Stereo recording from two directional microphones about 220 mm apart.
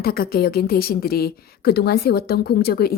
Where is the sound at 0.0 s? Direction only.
45° left (ahead or behind).